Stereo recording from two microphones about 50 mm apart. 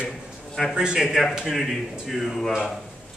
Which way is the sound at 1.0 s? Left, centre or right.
Centre.